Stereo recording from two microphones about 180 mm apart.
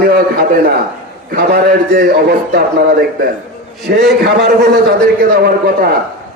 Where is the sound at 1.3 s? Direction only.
65° right (ahead or behind).